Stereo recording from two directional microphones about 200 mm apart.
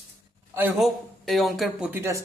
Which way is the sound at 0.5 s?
10° right (ahead or behind).